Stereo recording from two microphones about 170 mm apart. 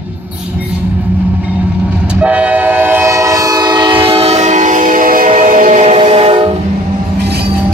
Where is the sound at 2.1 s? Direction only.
10° right (ahead or behind); by 6.4 s 35° right (ahead or behind).